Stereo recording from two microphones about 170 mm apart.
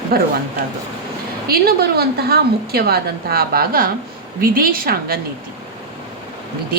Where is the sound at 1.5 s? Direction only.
65° right (ahead or behind).